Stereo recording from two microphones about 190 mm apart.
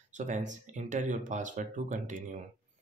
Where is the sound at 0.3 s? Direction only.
40° right (ahead or behind).